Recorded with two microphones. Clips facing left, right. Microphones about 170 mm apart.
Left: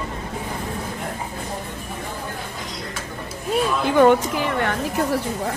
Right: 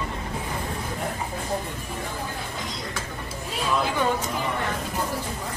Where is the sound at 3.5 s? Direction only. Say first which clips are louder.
Left 7 dB; 65° left (ahead or behind).